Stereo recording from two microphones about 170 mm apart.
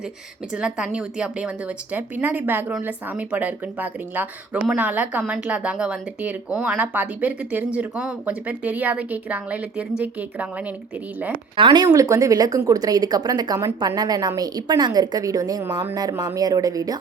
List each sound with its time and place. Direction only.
0.5 s a woman's voice: 5° right (ahead or behind)
11.5 s speech: 30° right (ahead or behind)